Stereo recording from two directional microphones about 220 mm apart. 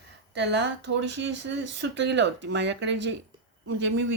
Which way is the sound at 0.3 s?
50° right (ahead or behind).